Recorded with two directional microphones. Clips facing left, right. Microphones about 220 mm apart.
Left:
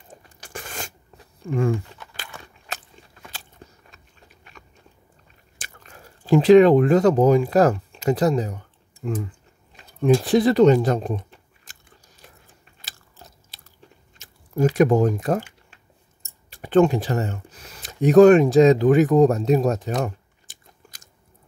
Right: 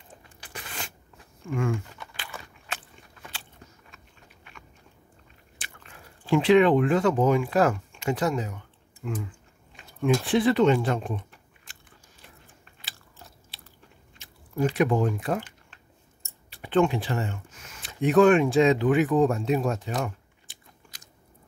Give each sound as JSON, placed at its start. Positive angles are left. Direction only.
{"t": 0.4, "sound": "a sound", "side_deg": 45}
{"t": 2.7, "sound": "biting", "side_deg": 40}
{"t": 5.6, "sound": "speech", "side_deg": 40}
{"t": 11.7, "sound": "gears", "side_deg": 45}
{"t": 13.5, "sound": "biting", "side_deg": 45}
{"t": 14.1, "sound": "chewing", "side_deg": 45}
{"t": 14.8, "sound": "speech", "side_deg": 45}
{"t": 16.4, "sound": "speech", "side_deg": 45}